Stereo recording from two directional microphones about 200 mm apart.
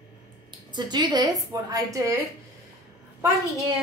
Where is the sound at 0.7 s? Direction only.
20° right (ahead or behind).